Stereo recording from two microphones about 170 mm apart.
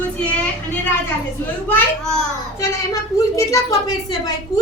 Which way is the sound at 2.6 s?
20° left (ahead or behind).